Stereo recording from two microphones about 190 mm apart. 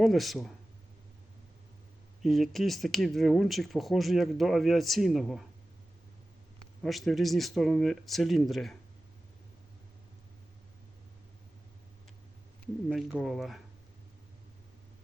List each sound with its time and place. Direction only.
0.0 s speech: centre (ahead or behind)
2.2 s speech: centre (ahead or behind)
6.8 s speech: centre (ahead or behind)
13.1 s speech: 5° right (ahead or behind)